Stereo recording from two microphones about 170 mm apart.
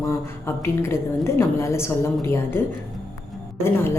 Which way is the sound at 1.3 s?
15° left (ahead or behind).